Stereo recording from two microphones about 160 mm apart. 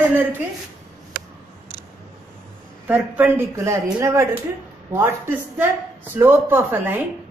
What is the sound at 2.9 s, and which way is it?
A woman's voice, 10° right (ahead or behind).